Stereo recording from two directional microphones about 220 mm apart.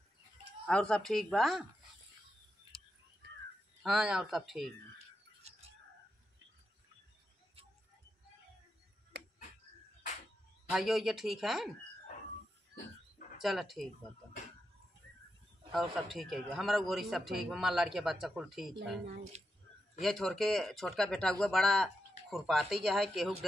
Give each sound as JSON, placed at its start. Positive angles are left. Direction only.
{"t": 0.7, "sound": "speech", "side_deg": 5}
{"t": 2.7, "sound": "whispering", "side_deg": 0}
{"t": 3.8, "sound": "speech", "side_deg": 0}
{"t": 10.7, "sound": "speech", "side_deg": 0}
{"t": 13.4, "sound": "speech", "side_deg": 0}
{"t": 15.7, "sound": "speech", "side_deg": 0}
{"t": 19.3, "sound": "speech", "side_deg": -30}
{"t": 20.0, "sound": "speech", "side_deg": 0}